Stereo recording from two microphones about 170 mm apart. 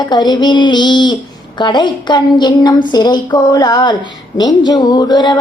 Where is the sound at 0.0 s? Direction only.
25° left (ahead or behind).